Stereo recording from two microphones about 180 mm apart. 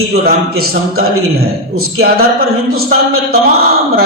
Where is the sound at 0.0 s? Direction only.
60° right (ahead or behind).